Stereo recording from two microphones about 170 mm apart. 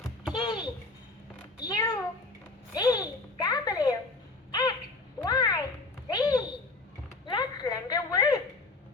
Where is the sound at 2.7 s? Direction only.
25° left (ahead or behind).